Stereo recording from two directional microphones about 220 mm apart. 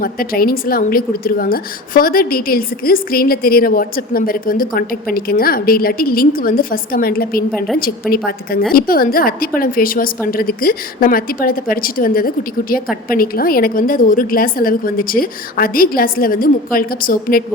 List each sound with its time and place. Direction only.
0.0 s a woman's voice: 40° left (ahead or behind)
8.7 s a woman's voice: 40° left (ahead or behind)